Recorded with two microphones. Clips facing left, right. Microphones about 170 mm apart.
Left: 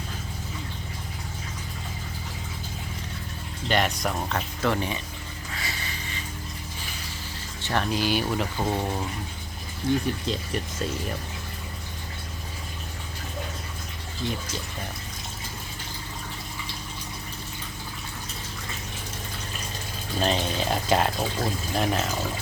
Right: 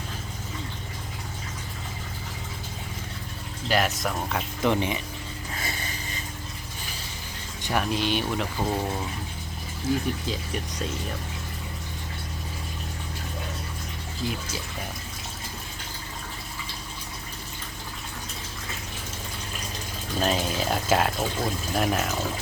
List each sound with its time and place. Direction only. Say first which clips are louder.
3.7 s speech: even; centre (ahead or behind)
4.6 s speech: right 2 dB; 20° right (ahead or behind)
5.5 s a sound: right 1 dB; 45° right (ahead or behind)
7.6 s speech: even; 10° right (ahead or behind)
7.9 s speech: left 1 dB; centre (ahead or behind)
14.2 s speech: even; centre (ahead or behind)
20.1 s speech: even; 5° right (ahead or behind)